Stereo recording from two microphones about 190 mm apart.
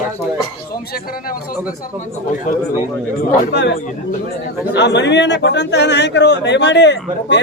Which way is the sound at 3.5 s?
65° left (ahead or behind).